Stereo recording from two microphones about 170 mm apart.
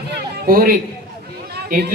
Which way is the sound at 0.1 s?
65° right (ahead or behind).